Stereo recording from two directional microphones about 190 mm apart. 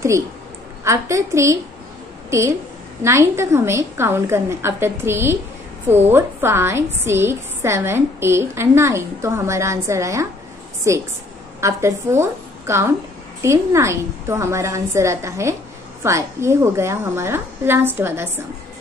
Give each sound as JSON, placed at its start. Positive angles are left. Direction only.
{"t": 0.8, "sound": "a woman's voice", "side_deg": -15}
{"t": 3.0, "sound": "a woman's voice", "side_deg": -15}